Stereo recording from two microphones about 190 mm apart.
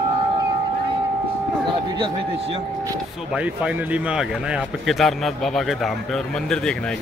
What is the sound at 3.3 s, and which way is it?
Speech, 5° right (ahead or behind).